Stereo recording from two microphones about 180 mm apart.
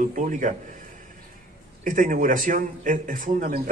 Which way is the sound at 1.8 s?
45° right (ahead or behind).